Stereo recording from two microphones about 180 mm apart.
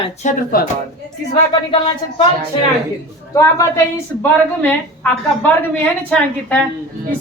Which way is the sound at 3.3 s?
20° left (ahead or behind).